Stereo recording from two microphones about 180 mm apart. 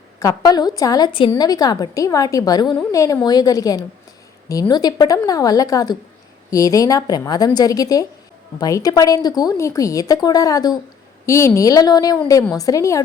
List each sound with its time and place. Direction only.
0.2 s a woman's voice: 20° left (ahead or behind)